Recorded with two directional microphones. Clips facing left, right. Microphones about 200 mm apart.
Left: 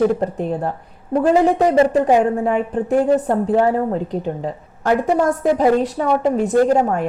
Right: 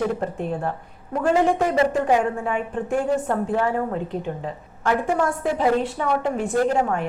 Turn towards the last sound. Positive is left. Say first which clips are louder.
# left 6 dB
turn(degrees=40)  # may be behind; listen again after turning